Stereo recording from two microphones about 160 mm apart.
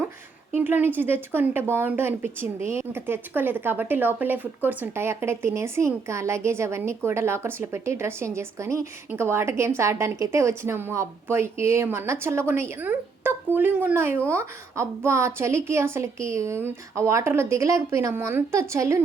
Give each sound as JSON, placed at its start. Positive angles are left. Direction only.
{"t": 0.5, "sound": "speech", "side_deg": -10}